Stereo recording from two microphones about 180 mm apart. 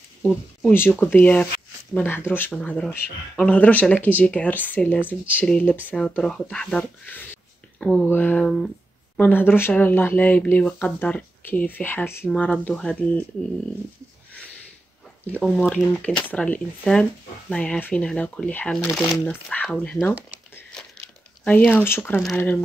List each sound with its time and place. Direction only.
0.2 s speech: 10° left (ahead or behind)
15.2 s speech: 5° left (ahead or behind)
21.5 s speech: 10° left (ahead or behind)